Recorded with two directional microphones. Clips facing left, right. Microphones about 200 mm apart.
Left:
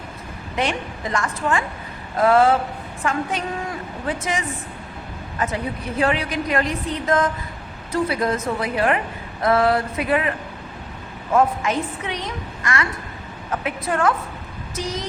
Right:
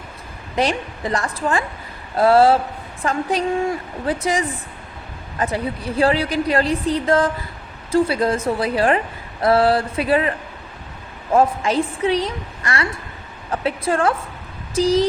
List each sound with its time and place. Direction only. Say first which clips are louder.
0.5 s a woman's voice: right 3 dB; 35° right (ahead or behind)